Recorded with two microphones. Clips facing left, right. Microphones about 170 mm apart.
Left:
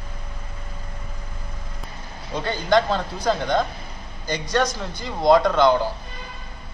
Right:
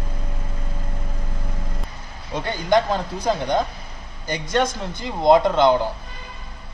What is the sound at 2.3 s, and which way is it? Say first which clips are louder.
Speech: even; 15° right (ahead or behind).